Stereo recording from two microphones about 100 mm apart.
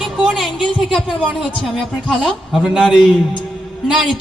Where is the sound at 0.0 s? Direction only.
5° right (ahead or behind).